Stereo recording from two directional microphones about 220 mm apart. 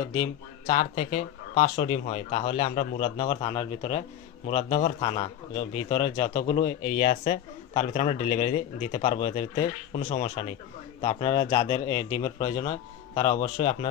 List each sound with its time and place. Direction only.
0.2 s a man's voice: 30° left (ahead or behind)